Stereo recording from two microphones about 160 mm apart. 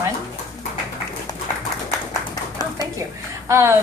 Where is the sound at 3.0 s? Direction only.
15° right (ahead or behind).